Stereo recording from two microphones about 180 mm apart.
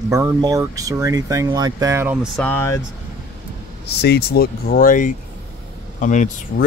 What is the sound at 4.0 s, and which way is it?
Speech, 65° left (ahead or behind).